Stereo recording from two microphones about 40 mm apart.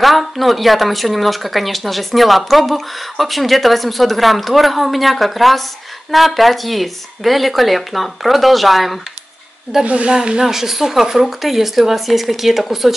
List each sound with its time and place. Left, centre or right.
0.0 s speech: centre
9.8 s speech: right
10.1 s speech: centre